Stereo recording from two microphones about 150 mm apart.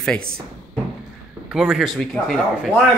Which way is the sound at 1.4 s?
5° right (ahead or behind).